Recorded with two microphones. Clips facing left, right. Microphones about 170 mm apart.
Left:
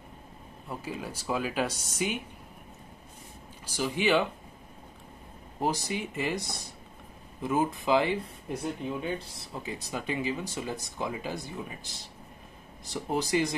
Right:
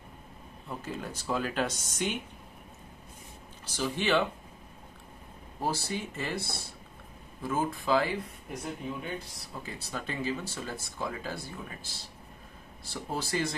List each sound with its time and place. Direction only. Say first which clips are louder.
0.7 s speech: left 1 dB; 10° left (ahead or behind)
3.6 s speech: left 3 dB; 10° left (ahead or behind)
5.6 s speech: left 2 dB; 15° left (ahead or behind)
9.4 s speech: left 4 dB; 20° left (ahead or behind)